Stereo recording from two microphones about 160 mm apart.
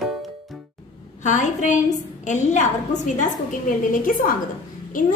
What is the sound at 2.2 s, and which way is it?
A woman's voice, 50° left (ahead or behind).